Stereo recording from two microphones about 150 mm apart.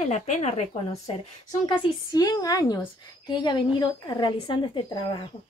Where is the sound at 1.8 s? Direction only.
25° left (ahead or behind).